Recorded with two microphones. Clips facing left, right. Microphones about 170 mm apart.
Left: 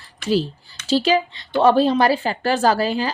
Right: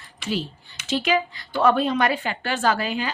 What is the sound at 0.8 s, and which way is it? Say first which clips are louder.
A woman's voice: left 5 dB; 30° left (ahead or behind).